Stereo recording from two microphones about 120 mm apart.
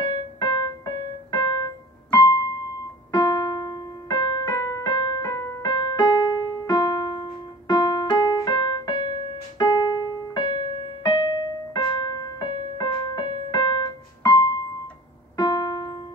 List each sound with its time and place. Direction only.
0.4 s keyboard: 35° left (ahead or behind)
9.6 s music: 35° left (ahead or behind)
15.3 s piano: 35° left (ahead or behind)